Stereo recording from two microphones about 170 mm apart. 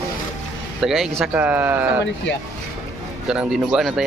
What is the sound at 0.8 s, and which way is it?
Speech, centre (ahead or behind).